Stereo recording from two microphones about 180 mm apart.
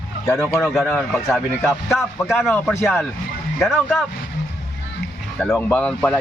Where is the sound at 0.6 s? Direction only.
Centre (ahead or behind).